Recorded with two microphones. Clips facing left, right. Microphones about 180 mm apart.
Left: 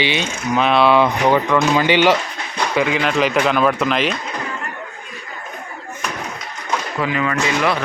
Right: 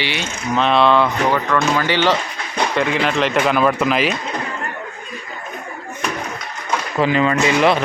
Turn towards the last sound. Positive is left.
turn(degrees=-25)  # may be behind; listen again after turning